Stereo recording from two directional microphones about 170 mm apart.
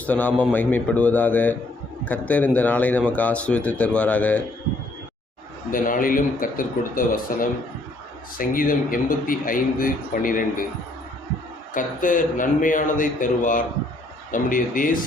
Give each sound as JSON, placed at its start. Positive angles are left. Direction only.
{"t": 0.0, "sound": "a man's voice", "side_deg": 10}
{"t": 5.7, "sound": "speech", "side_deg": 55}
{"t": 8.4, "sound": "speech", "side_deg": 55}
{"t": 11.7, "sound": "speech", "side_deg": 50}